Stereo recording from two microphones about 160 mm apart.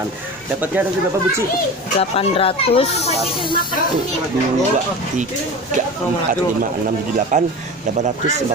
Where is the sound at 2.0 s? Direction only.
35° left (ahead or behind).